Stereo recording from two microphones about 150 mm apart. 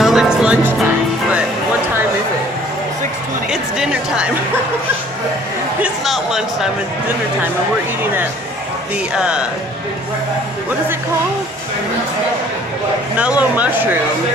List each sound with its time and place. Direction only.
0.0 s music: 5° right (ahead or behind)
3.4 s music: 5° right (ahead or behind)
5.8 s a sound: centre (ahead or behind)
9.1 s speech: 5° right (ahead or behind)
13.2 s speech: 10° right (ahead or behind)